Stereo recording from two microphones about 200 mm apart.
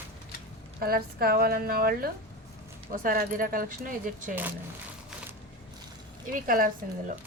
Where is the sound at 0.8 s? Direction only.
50° right (ahead or behind).